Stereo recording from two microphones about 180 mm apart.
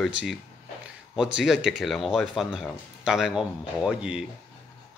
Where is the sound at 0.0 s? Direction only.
Centre (ahead or behind).